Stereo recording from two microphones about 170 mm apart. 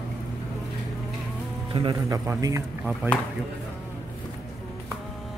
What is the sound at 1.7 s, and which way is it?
Speech, 25° right (ahead or behind).